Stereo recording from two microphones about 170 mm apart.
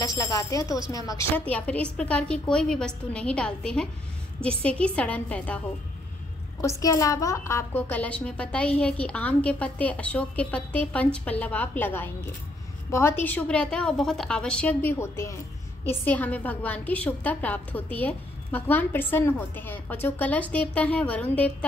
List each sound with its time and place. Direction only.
0.0 s speech: 20° left (ahead or behind)
0.7 s speech: 25° right (ahead or behind)
0.9 s a woman's voice: 20° left (ahead or behind)
1.3 s a woman's voice: 10° left (ahead or behind)
6.6 s a woman's voice: 20° left (ahead or behind)